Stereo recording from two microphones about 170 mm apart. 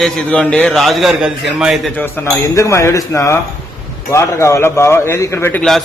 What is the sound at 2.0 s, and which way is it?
A man's voice, 15° left (ahead or behind).